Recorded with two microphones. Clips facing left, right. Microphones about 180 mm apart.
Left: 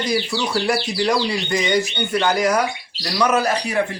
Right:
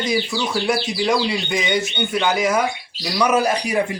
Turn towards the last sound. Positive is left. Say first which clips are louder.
# right 1 dB
turn(degrees=-10)  # may be behind; listen again after turning